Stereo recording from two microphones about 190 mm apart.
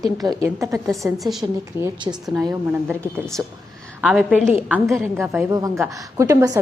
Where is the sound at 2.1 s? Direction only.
20° right (ahead or behind).